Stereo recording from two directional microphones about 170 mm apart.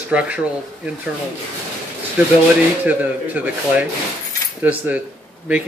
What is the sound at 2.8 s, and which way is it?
Speech, 10° right (ahead or behind).